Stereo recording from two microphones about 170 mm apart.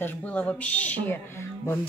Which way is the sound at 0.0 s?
10° left (ahead or behind).